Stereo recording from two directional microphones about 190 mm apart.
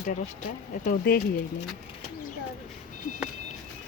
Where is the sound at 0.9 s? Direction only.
50° left (ahead or behind).